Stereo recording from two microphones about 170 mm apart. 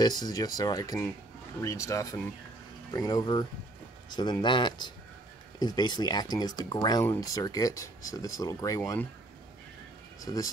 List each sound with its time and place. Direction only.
0.0 s speech: 25° left (ahead or behind)
10.2 s speech: 20° left (ahead or behind)